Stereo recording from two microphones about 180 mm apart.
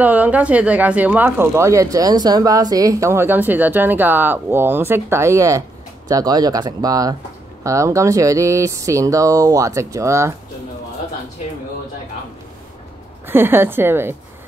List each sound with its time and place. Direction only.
0.0 s speech: 10° right (ahead or behind)
13.3 s speech: 10° right (ahead or behind)